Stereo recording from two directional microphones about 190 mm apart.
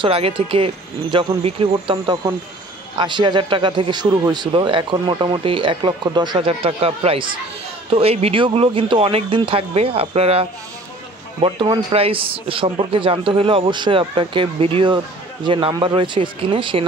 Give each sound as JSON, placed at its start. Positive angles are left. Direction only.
{"t": 0.0, "sound": "a man's voice", "side_deg": -25}
{"t": 11.4, "sound": "a man's voice", "side_deg": -25}